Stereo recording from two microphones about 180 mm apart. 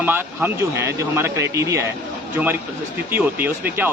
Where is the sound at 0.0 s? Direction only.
10° right (ahead or behind).